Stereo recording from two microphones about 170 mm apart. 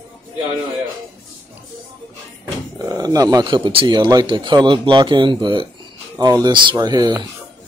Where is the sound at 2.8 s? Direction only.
20° right (ahead or behind).